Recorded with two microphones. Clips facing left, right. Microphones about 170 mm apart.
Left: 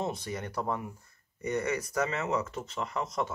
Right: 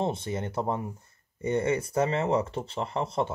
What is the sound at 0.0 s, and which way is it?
Speech, 25° right (ahead or behind).